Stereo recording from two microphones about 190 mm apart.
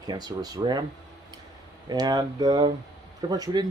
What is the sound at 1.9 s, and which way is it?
Speech, 20° right (ahead or behind).